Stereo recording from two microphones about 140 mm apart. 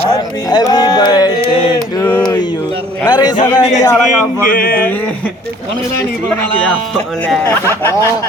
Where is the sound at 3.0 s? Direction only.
30° left (ahead or behind).